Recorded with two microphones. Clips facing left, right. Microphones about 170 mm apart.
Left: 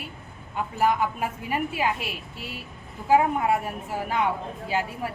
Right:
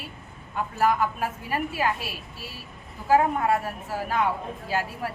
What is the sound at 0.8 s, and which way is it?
A woman's voice, 20° left (ahead or behind).